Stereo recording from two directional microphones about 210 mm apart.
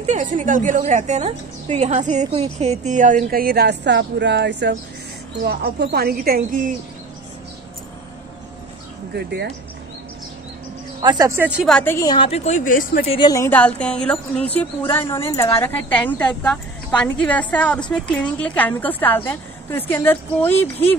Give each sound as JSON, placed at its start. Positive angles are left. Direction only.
{"t": 0.0, "sound": "a woman's voice", "side_deg": -35}
{"t": 9.1, "sound": "speech", "side_deg": -50}
{"t": 11.0, "sound": "speech", "side_deg": -20}
{"t": 11.6, "sound": "a woman's voice", "side_deg": 5}
{"t": 13.1, "sound": "a woman's voice", "side_deg": 20}